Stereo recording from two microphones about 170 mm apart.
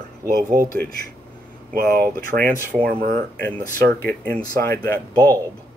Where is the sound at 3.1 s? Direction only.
10° left (ahead or behind).